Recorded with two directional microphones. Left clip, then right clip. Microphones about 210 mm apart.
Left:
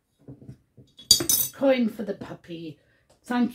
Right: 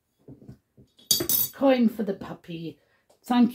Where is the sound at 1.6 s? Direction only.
30° right (ahead or behind).